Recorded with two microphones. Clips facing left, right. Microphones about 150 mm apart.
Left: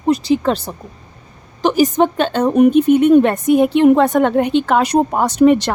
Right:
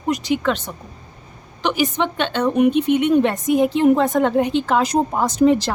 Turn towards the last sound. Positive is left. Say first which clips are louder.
# left 4 dB
turn(degrees=65)  # may be behind; listen again after turning